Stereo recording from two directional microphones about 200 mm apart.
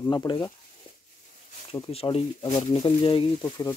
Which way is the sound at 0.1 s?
20° left (ahead or behind).